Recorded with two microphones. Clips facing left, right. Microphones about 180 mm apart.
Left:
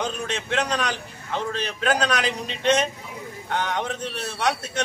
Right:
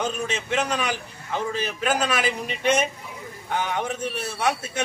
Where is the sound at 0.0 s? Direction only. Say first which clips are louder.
Right 1 dB; 5° right (ahead or behind).